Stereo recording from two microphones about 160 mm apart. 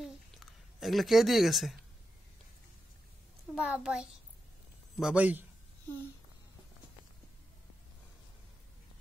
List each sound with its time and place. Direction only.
0.7 s a man's voice: centre (ahead or behind)
3.5 s a man's voice: 5° right (ahead or behind)